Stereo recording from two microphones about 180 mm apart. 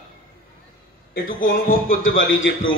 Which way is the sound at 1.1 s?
55° left (ahead or behind).